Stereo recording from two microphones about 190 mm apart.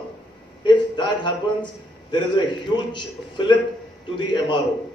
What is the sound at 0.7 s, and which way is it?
A man's voice, 25° left (ahead or behind).